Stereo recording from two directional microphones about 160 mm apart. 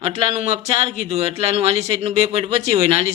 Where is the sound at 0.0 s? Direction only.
35° right (ahead or behind).